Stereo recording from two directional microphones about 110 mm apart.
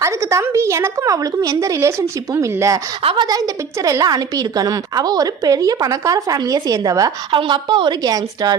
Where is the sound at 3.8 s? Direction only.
30° right (ahead or behind).